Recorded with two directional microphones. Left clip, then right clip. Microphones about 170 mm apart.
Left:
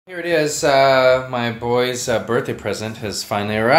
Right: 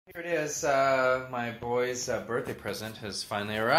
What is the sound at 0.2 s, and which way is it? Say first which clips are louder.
Speech: left 12 dB; 20° left (ahead or behind).